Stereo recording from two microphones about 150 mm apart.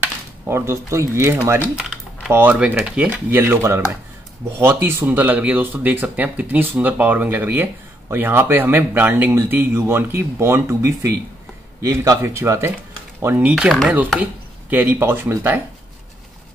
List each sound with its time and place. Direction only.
0.0 s speech: 15° right (ahead or behind)